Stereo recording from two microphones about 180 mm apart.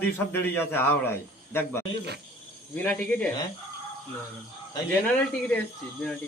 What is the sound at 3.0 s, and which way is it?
Speech, 10° left (ahead or behind).